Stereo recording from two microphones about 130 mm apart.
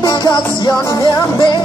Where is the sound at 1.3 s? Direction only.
40° left (ahead or behind).